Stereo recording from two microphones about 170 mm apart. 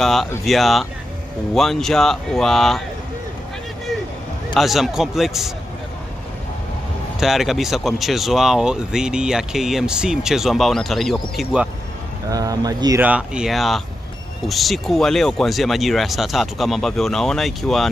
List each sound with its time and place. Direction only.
0.0 s speech: centre (ahead or behind)
4.6 s speech: centre (ahead or behind)
7.2 s speech: centre (ahead or behind)
12.3 s speech: 20° right (ahead or behind)
13.0 s speech: 5° right (ahead or behind)